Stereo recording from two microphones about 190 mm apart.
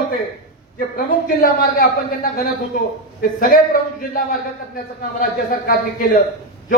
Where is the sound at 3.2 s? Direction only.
50° left (ahead or behind).